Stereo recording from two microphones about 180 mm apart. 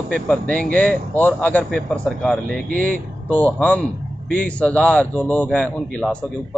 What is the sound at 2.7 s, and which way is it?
Speech, 50° right (ahead or behind).